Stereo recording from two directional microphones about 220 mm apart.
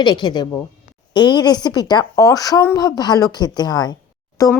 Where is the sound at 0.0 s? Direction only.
20° left (ahead or behind).